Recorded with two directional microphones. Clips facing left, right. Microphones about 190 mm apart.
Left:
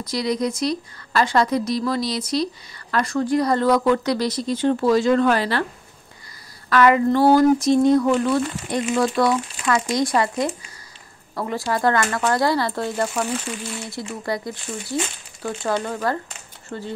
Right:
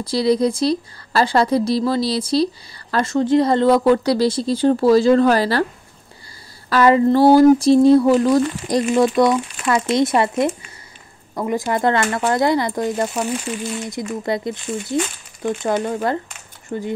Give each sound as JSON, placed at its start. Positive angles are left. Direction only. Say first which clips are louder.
{"t": 0.0, "sound": "a woman's voice", "louder": "right 6 dB", "side_deg": -30}
{"t": 6.7, "sound": "a woman's voice", "louder": "right 3 dB", "side_deg": -30}
{"t": 8.9, "sound": "speech", "louder": "right 4 dB", "side_deg": -20}